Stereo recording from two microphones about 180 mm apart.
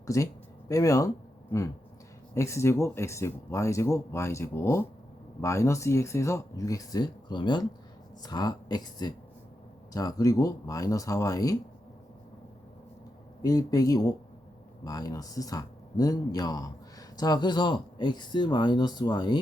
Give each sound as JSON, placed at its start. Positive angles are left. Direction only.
{"t": 0.1, "sound": "speech", "side_deg": 15}
{"t": 2.3, "sound": "speech", "side_deg": 15}
{"t": 13.4, "sound": "speech", "side_deg": 20}